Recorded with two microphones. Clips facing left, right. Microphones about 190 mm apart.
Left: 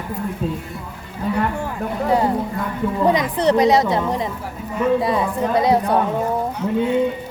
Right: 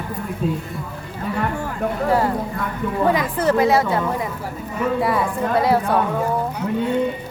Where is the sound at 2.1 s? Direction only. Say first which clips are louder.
Left 3 dB; 20° left (ahead or behind).